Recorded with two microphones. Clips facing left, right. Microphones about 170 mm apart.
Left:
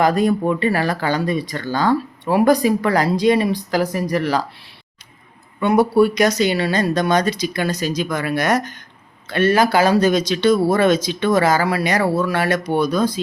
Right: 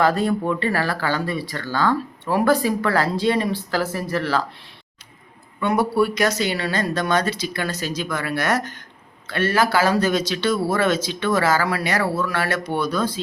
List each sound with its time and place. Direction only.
0.0 s speech: 15° left (ahead or behind)
5.6 s speech: 20° left (ahead or behind)